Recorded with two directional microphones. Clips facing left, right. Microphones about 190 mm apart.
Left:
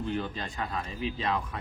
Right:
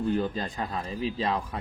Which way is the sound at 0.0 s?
40° right (ahead or behind).